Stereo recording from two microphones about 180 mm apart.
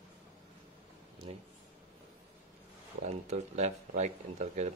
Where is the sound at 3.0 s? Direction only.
40° right (ahead or behind).